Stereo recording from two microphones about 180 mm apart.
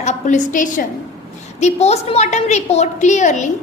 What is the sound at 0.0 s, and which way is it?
A woman's voice, 40° left (ahead or behind).